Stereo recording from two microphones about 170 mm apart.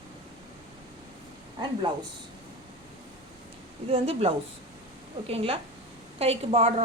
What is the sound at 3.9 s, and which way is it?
A woman's voice, 35° right (ahead or behind).